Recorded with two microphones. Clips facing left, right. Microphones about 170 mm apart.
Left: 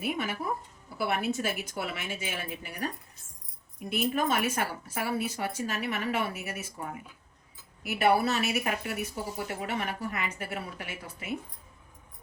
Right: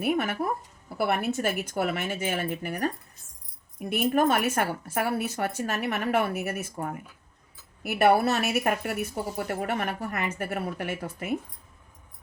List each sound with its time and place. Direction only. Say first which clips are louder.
0.0 s speech: right 6 dB; 55° right (ahead or behind)